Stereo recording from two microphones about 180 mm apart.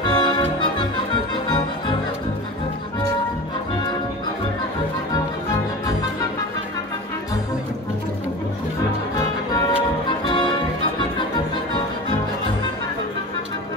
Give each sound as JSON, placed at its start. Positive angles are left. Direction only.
{"t": 0.0, "sound": "music", "side_deg": 25}
{"t": 10.0, "sound": "music", "side_deg": 25}